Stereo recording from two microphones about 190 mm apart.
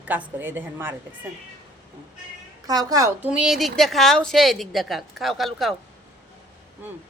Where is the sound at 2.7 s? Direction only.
20° right (ahead or behind).